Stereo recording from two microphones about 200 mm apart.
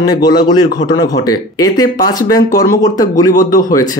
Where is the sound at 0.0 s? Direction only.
20° left (ahead or behind).